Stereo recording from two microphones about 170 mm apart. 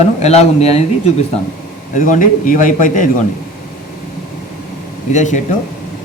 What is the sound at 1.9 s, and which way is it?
A man's voice, 50° left (ahead or behind).